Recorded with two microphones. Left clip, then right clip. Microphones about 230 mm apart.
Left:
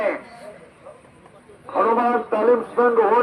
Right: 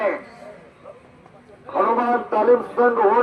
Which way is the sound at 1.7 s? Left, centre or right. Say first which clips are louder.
Even; left.